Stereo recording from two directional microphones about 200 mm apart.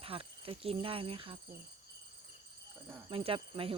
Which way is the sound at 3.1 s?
25° right (ahead or behind).